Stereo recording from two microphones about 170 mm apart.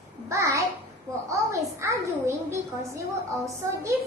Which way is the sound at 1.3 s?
20° right (ahead or behind).